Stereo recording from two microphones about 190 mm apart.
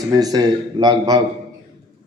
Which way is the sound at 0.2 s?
20° right (ahead or behind).